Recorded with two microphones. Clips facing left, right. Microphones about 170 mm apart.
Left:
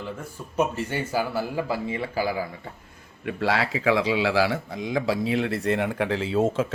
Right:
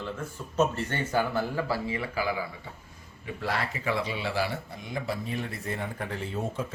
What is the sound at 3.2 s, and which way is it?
A man's voice, 90° left.